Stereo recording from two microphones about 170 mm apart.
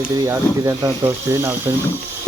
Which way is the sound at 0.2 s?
20° right (ahead or behind).